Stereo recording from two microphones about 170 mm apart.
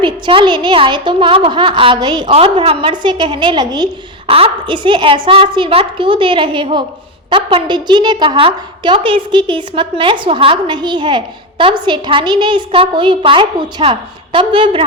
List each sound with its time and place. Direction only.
0.0 s a woman's voice: 30° right (ahead or behind)